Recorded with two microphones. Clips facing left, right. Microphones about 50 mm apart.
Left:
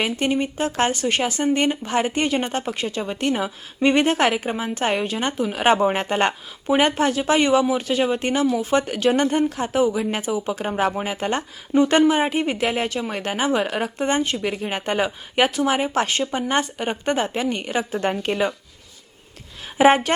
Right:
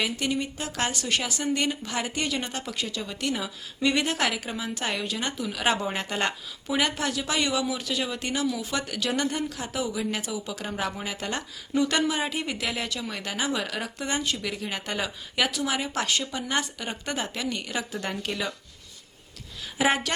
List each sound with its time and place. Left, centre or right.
0.0 s speech: left
19.8 s speech: left